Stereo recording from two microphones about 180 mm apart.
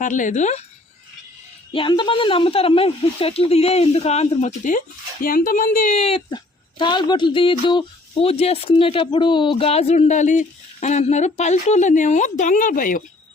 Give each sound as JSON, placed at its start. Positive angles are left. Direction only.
{"t": 0.0, "sound": "speech", "side_deg": 45}
{"t": 1.7, "sound": "speech", "side_deg": 30}
{"t": 6.3, "sound": "speech", "side_deg": 25}